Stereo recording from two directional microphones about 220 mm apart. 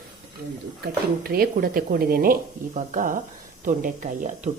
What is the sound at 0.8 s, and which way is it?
Speech, 45° right (ahead or behind).